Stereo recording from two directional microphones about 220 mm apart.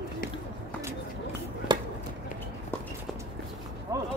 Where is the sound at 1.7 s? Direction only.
20° right (ahead or behind).